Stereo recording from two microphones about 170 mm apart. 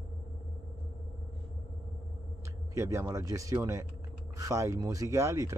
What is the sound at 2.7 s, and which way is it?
A man's voice, 15° right (ahead or behind).